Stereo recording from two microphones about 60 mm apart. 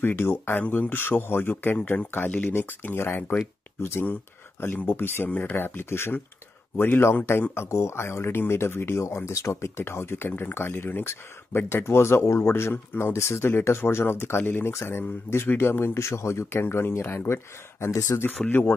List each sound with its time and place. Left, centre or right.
0.0 s speech: left
7.5 s speech: left
16.6 s speech: left
18.5 s speech: left